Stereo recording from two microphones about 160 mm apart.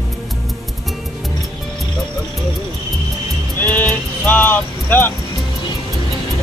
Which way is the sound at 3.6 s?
10° left (ahead or behind).